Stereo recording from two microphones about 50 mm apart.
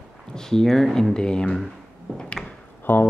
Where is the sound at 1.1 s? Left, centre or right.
Centre.